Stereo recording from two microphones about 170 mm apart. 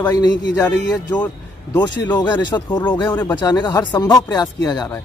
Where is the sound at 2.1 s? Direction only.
25° left (ahead or behind).